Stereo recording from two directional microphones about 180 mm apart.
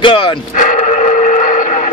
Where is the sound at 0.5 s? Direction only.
45° left (ahead or behind).